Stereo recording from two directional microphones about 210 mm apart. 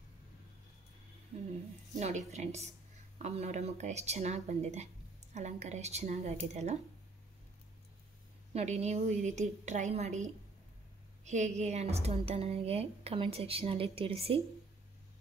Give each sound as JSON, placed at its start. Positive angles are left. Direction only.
{"t": 2.0, "sound": "speech", "side_deg": -35}
{"t": 8.5, "sound": "speech", "side_deg": -30}
{"t": 11.2, "sound": "a woman's voice", "side_deg": -35}